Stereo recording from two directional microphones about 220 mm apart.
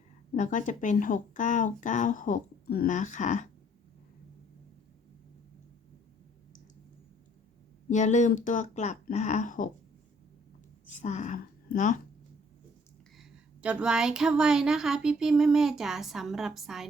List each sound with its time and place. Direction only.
0.3 s speech: 35° left (ahead or behind)
7.9 s speech: 35° left (ahead or behind)
10.8 s a woman's voice: 35° left (ahead or behind)
13.1 s speech: 5° right (ahead or behind)